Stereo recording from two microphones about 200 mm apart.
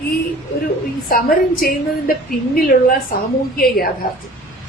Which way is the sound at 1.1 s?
50° left (ahead or behind).